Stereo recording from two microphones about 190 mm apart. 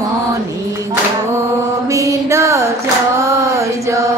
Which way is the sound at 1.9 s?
15° right (ahead or behind).